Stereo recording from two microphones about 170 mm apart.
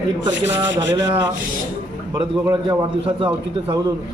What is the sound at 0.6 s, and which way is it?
Rub, 25° right (ahead or behind).